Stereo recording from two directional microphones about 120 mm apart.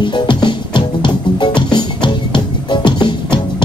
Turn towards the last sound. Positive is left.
turn(degrees=40)  # may be behind; listen again after turning